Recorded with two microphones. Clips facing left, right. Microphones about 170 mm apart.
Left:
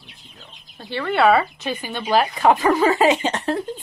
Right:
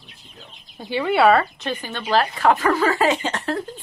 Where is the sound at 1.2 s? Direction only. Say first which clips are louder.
Left 1 dB; 5° left (ahead or behind).